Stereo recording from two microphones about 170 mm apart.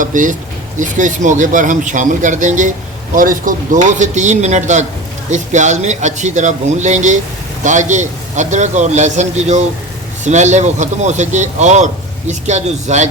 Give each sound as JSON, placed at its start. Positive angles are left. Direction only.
{"t": 0.0, "sound": "a man's voice", "side_deg": -50}